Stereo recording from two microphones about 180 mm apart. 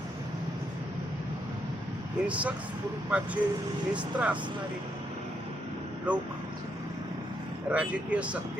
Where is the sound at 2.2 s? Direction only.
5° right (ahead or behind).